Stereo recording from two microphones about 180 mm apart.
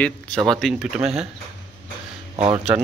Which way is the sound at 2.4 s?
35° right (ahead or behind).